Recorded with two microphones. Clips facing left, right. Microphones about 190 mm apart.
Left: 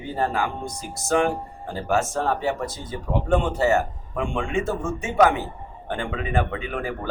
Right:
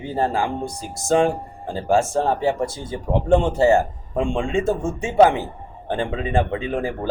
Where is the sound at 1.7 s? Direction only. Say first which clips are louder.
Right 4 dB; 30° right (ahead or behind).